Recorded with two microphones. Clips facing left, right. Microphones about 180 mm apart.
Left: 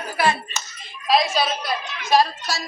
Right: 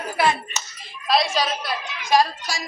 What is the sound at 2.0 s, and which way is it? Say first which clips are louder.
Speech: even; 15° right (ahead or behind).